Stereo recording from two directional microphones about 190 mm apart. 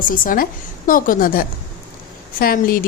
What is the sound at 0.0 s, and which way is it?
A woman's voice, 45° left (ahead or behind).